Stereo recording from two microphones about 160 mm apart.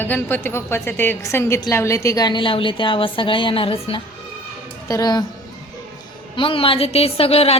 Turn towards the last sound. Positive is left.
turn(degrees=40)  # may be behind; listen again after turning